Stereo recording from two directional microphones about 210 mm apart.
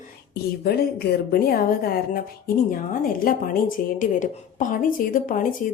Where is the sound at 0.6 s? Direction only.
45° left (ahead or behind).